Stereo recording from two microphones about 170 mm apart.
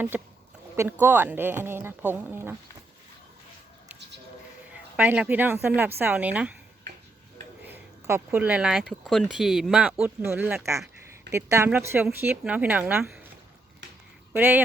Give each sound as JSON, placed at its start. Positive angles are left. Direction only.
{"t": 0.1, "sound": "a woman's voice", "side_deg": -10}
{"t": 4.9, "sound": "a woman's voice", "side_deg": -10}
{"t": 7.7, "sound": "a woman's voice", "side_deg": -15}
{"t": 14.3, "sound": "a woman's voice", "side_deg": -10}